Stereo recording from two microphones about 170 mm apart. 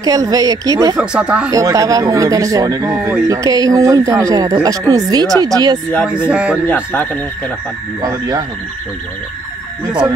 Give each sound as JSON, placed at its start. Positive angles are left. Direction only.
{"t": 0.0, "sound": "speech", "side_deg": -20}
{"t": 0.9, "sound": "speech", "side_deg": -5}
{"t": 1.5, "sound": "speech", "side_deg": -20}
{"t": 6.0, "sound": "speech", "side_deg": -5}
{"t": 6.7, "sound": "speech", "side_deg": 10}
{"t": 8.0, "sound": "speech", "side_deg": -20}